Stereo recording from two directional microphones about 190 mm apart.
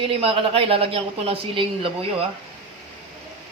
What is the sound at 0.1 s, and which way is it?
Speech, 30° right (ahead or behind).